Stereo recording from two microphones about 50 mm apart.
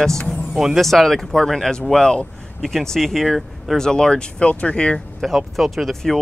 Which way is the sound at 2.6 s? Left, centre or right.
Centre.